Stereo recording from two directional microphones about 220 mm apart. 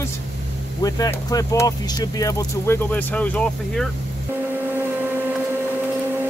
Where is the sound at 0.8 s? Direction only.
15° left (ahead or behind).